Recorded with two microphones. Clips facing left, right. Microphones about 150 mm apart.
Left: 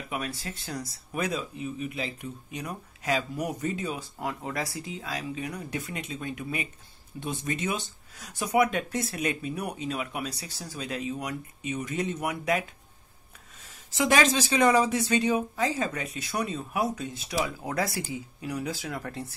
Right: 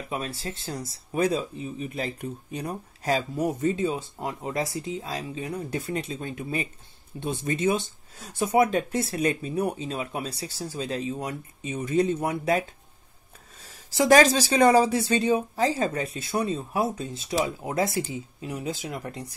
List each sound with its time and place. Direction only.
0.1 s speech: 30° right (ahead or behind)
13.8 s speech: 35° right (ahead or behind); by 19.3 s 20° right (ahead or behind)